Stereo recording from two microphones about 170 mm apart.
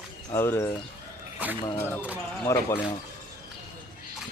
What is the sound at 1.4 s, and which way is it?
Speech, 10° right (ahead or behind).